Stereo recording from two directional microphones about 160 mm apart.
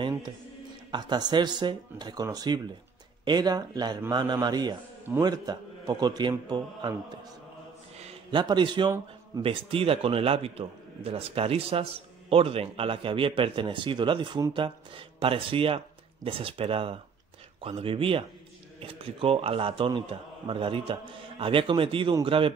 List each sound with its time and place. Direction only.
0.9 s speech: 25° right (ahead or behind)
8.0 s a man's voice: 30° right (ahead or behind)